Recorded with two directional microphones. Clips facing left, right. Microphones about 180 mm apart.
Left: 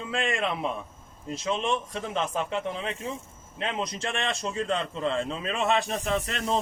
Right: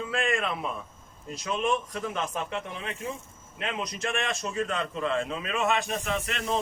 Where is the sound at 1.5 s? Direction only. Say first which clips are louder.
Even; 25° left (ahead or behind).